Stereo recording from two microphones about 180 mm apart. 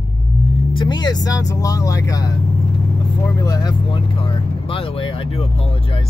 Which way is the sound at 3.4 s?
20° left (ahead or behind).